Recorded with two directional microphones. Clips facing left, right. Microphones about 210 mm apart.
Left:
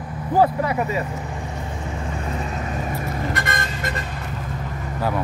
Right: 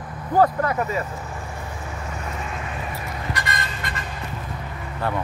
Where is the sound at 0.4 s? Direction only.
10° left (ahead or behind).